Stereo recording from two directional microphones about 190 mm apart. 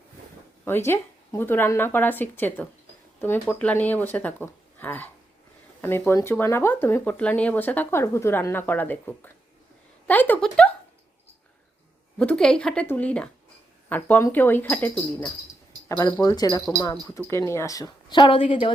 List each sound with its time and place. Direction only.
0.9 s speech: 15° left (ahead or behind)
10.1 s a sound: 10° left (ahead or behind)
12.2 s speech: 5° left (ahead or behind); by 18.7 s 30° left (ahead or behind)